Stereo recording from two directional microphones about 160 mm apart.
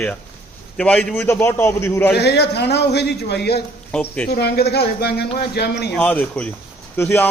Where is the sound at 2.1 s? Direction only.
90° left.